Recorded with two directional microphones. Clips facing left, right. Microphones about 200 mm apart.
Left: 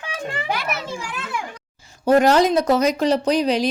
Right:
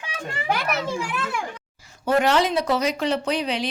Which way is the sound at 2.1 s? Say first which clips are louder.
Left 5 dB; 40° left (ahead or behind).